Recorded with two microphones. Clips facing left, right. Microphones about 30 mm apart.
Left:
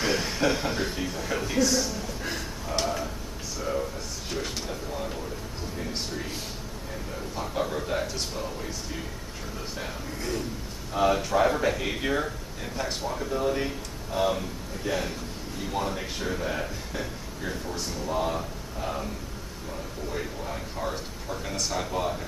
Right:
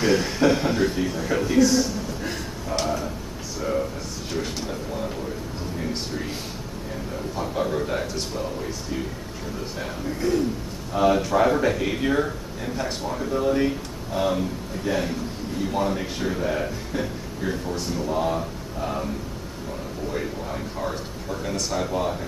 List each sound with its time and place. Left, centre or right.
0.0 s a man's voice: centre
4.3 s speech: centre
7.3 s speech: centre
9.8 s speech: centre
20.1 s speech: centre